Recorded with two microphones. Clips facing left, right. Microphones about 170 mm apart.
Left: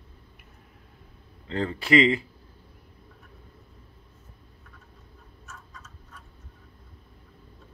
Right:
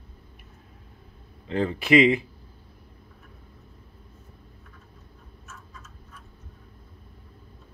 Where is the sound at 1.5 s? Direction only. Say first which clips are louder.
Right 2 dB; 15° right (ahead or behind).